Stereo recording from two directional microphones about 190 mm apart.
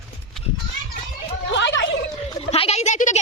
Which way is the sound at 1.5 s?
70° left (ahead or behind).